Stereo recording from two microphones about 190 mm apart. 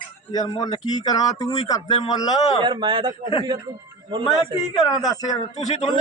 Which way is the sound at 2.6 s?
25° right (ahead or behind).